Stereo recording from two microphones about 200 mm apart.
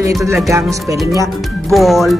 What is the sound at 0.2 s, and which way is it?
Speech, 15° right (ahead or behind).